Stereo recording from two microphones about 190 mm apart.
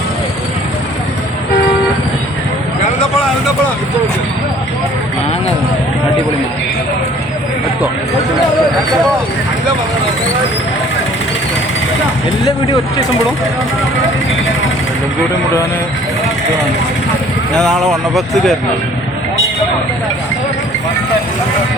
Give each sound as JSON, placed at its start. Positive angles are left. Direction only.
{"t": 17.5, "sound": "speech", "side_deg": 5}